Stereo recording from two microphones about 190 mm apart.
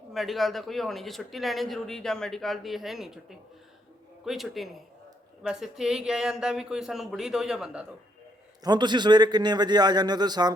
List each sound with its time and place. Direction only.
0.1 s speech: centre (ahead or behind)
8.6 s a man's voice: 25° right (ahead or behind)